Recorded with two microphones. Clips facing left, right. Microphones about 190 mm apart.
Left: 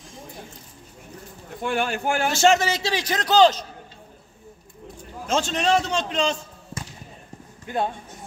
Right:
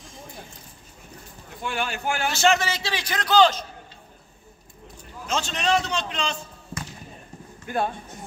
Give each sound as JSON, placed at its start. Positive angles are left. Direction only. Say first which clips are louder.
{"t": 1.6, "sound": "a man's voice", "louder": "left 4 dB", "side_deg": 50}
{"t": 5.2, "sound": "speech", "louder": "left 4 dB", "side_deg": 50}
{"t": 7.6, "sound": "speech", "louder": "even", "side_deg": 20}